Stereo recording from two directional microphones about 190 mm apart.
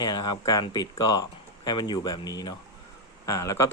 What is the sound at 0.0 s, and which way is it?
Speech, 20° left (ahead or behind).